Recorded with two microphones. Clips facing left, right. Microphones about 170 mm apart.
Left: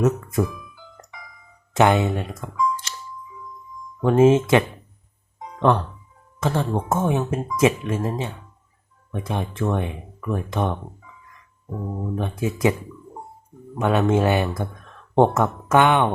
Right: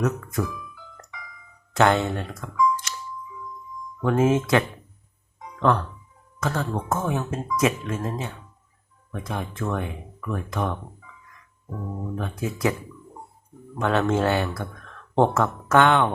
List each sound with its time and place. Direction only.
0.0 s speech: 20° left (ahead or behind)
1.7 s speech: 15° left (ahead or behind)
4.0 s speech: 20° left (ahead or behind)
12.1 s speech: 20° left (ahead or behind)
13.7 s speech: 15° left (ahead or behind)